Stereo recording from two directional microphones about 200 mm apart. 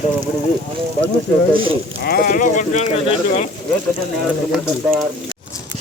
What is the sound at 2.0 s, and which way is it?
Speech, 50° left (ahead or behind).